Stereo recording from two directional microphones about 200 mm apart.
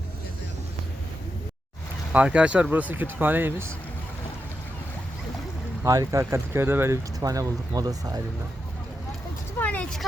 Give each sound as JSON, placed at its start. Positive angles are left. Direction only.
{"t": 2.1, "sound": "speech", "side_deg": -5}
{"t": 5.8, "sound": "speech", "side_deg": -15}
{"t": 9.6, "sound": "a sound", "side_deg": 5}